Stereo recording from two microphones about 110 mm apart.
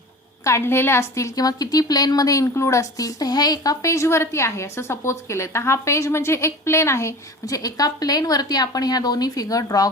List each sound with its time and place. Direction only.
0.4 s a woman's voice: 25° left (ahead or behind)